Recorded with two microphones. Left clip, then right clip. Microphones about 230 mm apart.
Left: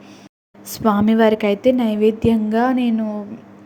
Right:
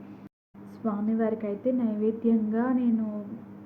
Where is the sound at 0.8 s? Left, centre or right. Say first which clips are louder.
Left 14 dB; left.